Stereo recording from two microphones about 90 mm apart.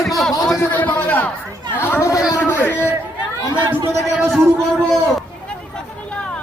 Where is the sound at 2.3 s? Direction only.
25° left (ahead or behind).